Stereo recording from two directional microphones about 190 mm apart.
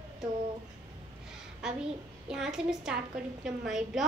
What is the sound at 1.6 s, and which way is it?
A child's voice, 5° right (ahead or behind).